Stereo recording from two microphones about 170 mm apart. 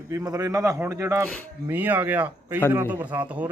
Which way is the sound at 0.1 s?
20° right (ahead or behind).